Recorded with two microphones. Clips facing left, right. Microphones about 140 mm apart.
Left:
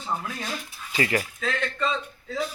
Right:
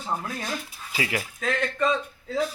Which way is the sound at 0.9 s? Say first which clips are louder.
Left 4 dB; 5° right (ahead or behind).